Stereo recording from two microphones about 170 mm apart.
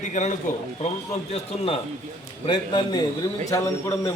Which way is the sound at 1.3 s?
35° left (ahead or behind).